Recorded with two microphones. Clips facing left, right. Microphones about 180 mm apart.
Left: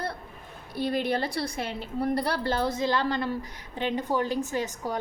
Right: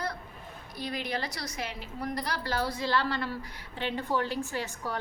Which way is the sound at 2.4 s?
25° left (ahead or behind).